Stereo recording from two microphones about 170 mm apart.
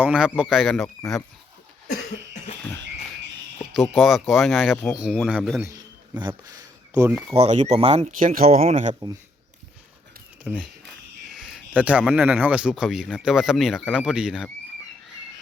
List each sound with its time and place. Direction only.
0.0 s speech: 5° right (ahead or behind)
3.8 s speech: centre (ahead or behind)
5.6 s a sound: 25° right (ahead or behind)
7.3 s speech: 40° right (ahead or behind)
10.5 s speech: 5° right (ahead or behind)